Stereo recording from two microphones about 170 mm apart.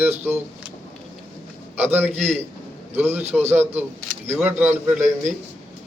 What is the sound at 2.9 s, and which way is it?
A man's voice, 15° right (ahead or behind).